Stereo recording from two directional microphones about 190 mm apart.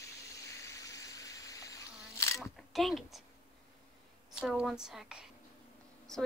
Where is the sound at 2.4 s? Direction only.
Centre (ahead or behind).